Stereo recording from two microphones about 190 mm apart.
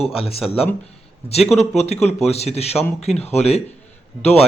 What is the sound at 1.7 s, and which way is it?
Speech, 35° left (ahead or behind).